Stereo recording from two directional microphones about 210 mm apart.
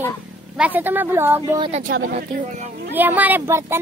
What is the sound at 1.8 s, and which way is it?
Speech, 45° right (ahead or behind).